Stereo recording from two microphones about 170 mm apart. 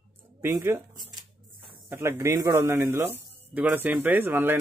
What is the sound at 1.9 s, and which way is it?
Speech, 15° right (ahead or behind).